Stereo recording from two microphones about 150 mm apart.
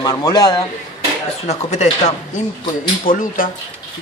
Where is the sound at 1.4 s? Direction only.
50° left (ahead or behind).